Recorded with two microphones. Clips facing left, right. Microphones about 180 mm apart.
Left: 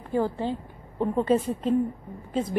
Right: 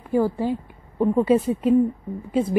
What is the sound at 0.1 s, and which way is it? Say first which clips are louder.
A woman's voice: right 5 dB; 10° right (ahead or behind).